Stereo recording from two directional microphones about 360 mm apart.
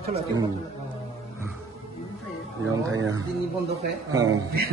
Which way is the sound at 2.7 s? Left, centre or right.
Right.